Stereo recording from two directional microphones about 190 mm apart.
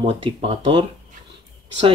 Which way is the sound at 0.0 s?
25° right (ahead or behind).